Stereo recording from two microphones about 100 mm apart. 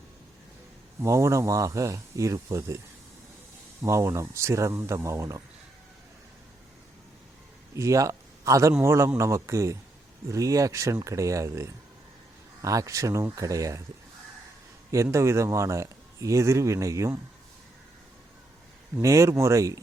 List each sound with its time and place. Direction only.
1.0 s a man's voice: 30° right (ahead or behind)
3.8 s speech: 30° right (ahead or behind)
7.8 s a man's voice: 30° right (ahead or behind)
14.8 s a man's voice: 30° right (ahead or behind)
19.0 s a man's voice: 30° right (ahead or behind)